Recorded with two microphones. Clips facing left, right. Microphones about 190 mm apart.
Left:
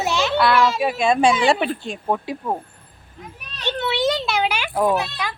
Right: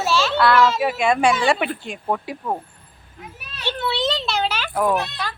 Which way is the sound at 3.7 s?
20° left (ahead or behind).